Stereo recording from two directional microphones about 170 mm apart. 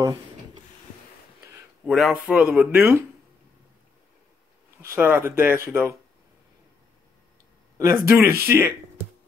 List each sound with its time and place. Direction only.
1.9 s speech: centre (ahead or behind)
4.8 s speech: 15° right (ahead or behind)
7.7 s a sound: 15° right (ahead or behind)
8.1 s speech: 15° right (ahead or behind)